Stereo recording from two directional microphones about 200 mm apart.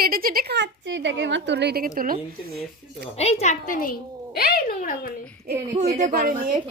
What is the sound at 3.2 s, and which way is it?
A woman's voice, 30° left (ahead or behind).